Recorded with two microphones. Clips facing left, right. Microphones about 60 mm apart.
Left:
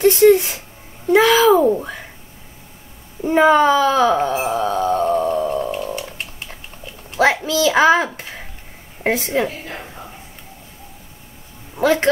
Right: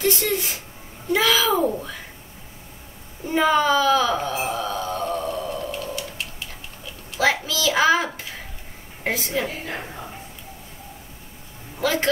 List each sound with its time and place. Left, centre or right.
0.0 s speech: left
3.3 s speech: left
4.6 s a sound: left
7.4 s speech: left
11.8 s speech: left